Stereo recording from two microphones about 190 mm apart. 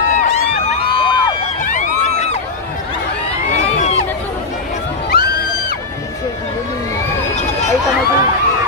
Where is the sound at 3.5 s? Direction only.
35° left (ahead or behind).